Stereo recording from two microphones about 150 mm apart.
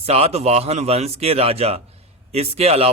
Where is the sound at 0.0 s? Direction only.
45° right (ahead or behind).